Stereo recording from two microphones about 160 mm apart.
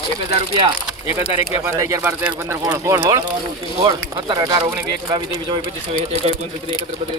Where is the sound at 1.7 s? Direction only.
20° right (ahead or behind).